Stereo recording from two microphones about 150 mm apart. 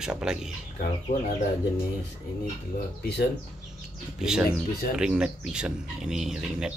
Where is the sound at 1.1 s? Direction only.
50° left (ahead or behind).